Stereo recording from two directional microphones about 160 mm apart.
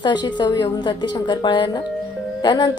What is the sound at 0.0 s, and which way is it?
A woman's voice, 30° left (ahead or behind).